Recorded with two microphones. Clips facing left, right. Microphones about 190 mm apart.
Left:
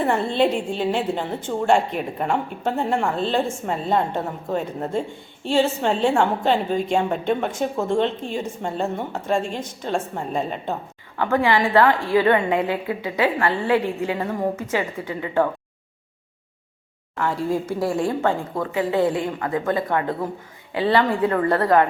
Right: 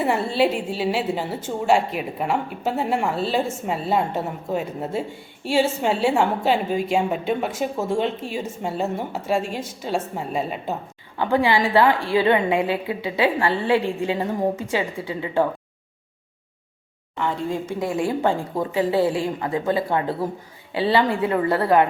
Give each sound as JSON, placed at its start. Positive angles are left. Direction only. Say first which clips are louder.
{"t": 0.0, "sound": "a woman's voice", "louder": "left 1 dB", "side_deg": -5}
{"t": 11.2, "sound": "a woman's voice", "louder": "even", "side_deg": -15}
{"t": 17.2, "sound": "a woman's voice", "louder": "left 2 dB", "side_deg": 5}
{"t": 18.2, "sound": "a woman's voice", "louder": "right 1 dB", "side_deg": -15}
{"t": 18.7, "sound": "speech", "louder": "even", "side_deg": -30}
{"t": 21.2, "sound": "a woman's voice", "louder": "left 1 dB", "side_deg": -10}